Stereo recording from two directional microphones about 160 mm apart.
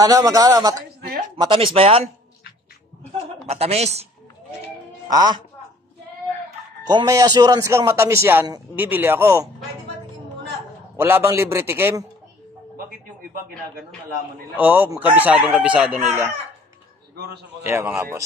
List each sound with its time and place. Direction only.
0.0 s a man's voice: 20° right (ahead or behind)
1.3 s speech: 35° right (ahead or behind)
3.4 s speech: 40° right (ahead or behind)
5.1 s a man's voice: 25° right (ahead or behind)
6.9 s a man's voice: 25° right (ahead or behind)
11.0 s speech: 15° right (ahead or behind)
14.5 s speech: 10° right (ahead or behind)
17.6 s speech: 15° right (ahead or behind)